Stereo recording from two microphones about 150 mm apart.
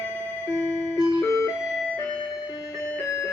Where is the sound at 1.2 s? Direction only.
20° left (ahead or behind).